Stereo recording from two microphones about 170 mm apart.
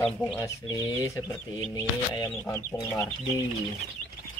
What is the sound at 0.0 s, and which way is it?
Speech, 10° left (ahead or behind).